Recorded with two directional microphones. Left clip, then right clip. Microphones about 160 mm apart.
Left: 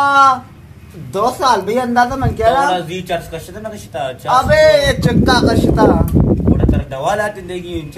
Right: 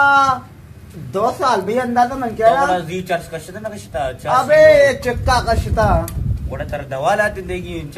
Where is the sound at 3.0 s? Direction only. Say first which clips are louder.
Left 1 dB; 30° left (ahead or behind).